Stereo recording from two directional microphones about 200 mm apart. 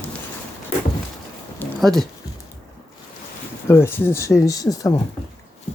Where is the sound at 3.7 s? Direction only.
10° left (ahead or behind).